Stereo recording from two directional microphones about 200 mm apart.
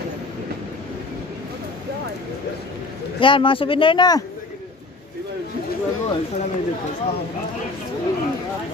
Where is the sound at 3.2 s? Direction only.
25° left (ahead or behind).